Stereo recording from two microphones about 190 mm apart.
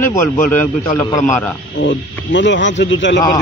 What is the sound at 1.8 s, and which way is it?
Speech, 70° left (ahead or behind).